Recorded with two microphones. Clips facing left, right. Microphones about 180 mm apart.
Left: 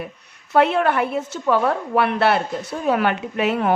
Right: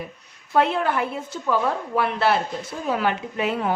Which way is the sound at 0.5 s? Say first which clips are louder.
Left 4 dB; 65° left (ahead or behind).